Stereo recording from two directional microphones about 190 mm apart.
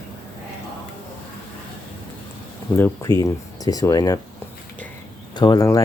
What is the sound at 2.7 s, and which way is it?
Speech, 15° left (ahead or behind).